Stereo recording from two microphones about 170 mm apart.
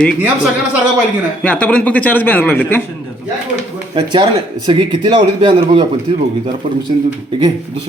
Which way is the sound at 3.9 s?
25° right (ahead or behind).